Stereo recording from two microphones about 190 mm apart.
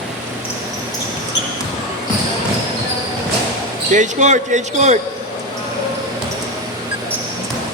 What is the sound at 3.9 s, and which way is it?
Speech, 40° right (ahead or behind).